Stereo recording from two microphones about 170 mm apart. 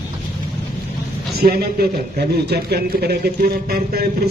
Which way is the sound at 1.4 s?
65° right (ahead or behind).